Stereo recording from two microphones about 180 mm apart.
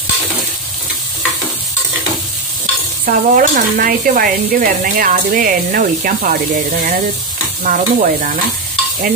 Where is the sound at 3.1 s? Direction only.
50° right (ahead or behind).